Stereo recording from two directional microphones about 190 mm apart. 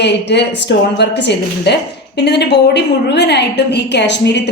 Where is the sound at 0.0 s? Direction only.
65° left (ahead or behind).